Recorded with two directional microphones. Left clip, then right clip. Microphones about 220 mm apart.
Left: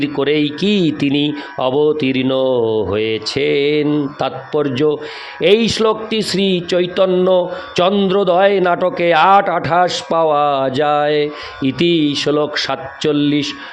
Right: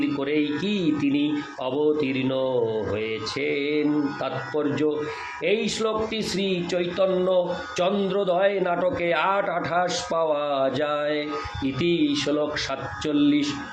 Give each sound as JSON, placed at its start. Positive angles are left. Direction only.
{"t": 0.0, "sound": "speech", "side_deg": 50}